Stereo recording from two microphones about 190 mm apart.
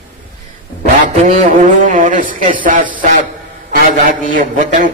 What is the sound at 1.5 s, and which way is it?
A man's voice, 45° right (ahead or behind).